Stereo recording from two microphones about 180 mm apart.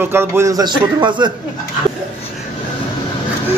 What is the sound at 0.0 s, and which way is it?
A man's voice, 15° right (ahead or behind).